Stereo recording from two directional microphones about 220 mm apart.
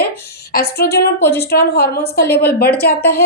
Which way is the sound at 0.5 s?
45° left (ahead or behind).